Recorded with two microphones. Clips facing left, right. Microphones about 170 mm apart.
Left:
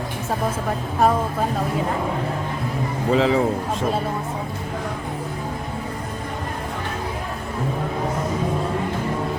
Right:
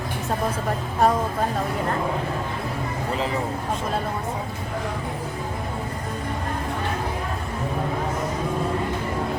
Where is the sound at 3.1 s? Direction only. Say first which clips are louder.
Left 9 dB; 90° left.